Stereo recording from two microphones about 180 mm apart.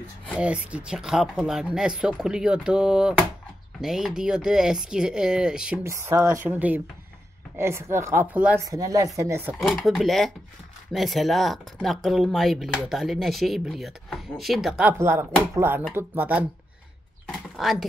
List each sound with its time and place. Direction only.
0.4 s speech: 5° right (ahead or behind)
5.9 s speech: 15° right (ahead or behind)
8.6 s speech: 20° right (ahead or behind)
9.6 s speech: centre (ahead or behind)
17.3 s a sound: centre (ahead or behind)